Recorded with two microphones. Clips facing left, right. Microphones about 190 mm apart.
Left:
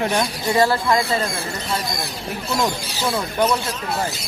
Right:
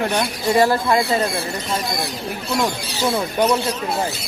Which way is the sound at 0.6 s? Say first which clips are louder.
Even; 15° right (ahead or behind).